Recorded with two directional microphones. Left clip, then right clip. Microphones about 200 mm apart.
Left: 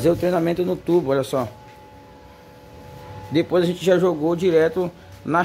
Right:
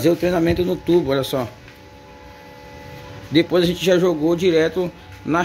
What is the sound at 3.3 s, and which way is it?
Speech, 5° left (ahead or behind).